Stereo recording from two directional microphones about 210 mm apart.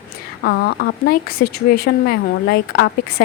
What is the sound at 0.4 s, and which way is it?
Speech, 50° left (ahead or behind).